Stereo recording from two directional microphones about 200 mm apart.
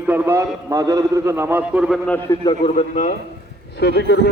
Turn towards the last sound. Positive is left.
turn(degrees=60)  # may be behind; listen again after turning